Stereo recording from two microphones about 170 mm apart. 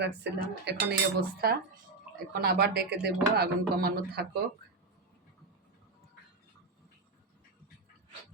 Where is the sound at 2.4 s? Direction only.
70° right (ahead or behind).